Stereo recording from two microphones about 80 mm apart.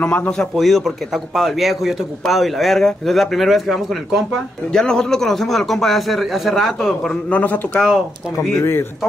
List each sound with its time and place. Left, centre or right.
0.0 s speech: centre
0.6 s a man's voice: centre
7.2 s speech: centre
7.8 s a man's voice: centre